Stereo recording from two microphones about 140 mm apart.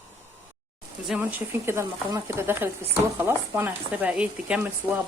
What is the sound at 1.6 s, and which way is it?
A woman's voice, 20° right (ahead or behind).